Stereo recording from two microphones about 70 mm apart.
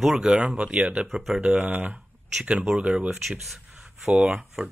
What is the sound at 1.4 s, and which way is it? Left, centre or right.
Speech, right.